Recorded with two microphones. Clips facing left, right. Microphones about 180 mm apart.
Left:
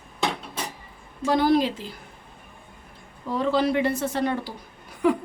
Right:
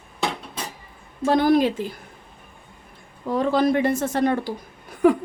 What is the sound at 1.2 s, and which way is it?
Speech, 50° right (ahead or behind).